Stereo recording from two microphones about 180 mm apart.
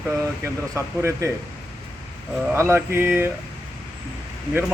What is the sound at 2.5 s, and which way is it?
Speech, 15° right (ahead or behind).